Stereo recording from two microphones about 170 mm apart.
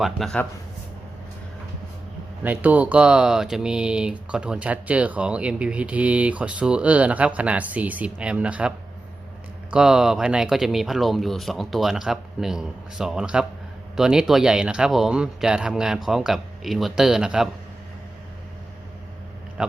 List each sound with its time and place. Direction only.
0.0 s speech: centre (ahead or behind)
2.4 s speech: 10° right (ahead or behind)
9.7 s speech: 5° right (ahead or behind)